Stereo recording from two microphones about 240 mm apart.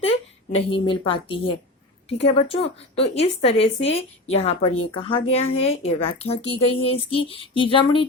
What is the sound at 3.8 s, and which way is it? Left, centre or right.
Speech, left.